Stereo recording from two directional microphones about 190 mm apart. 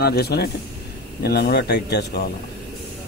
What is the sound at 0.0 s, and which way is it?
A man's voice, 60° left (ahead or behind).